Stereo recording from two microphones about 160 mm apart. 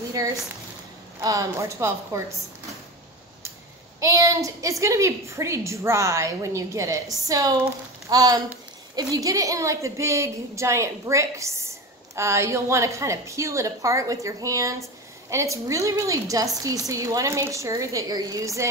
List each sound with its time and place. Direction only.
0.2 s a woman's voice: 20° right (ahead or behind)
4.0 s a woman's voice: 20° right (ahead or behind)